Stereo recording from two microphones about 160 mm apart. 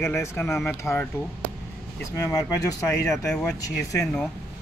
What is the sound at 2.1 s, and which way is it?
Speech, 15° left (ahead or behind).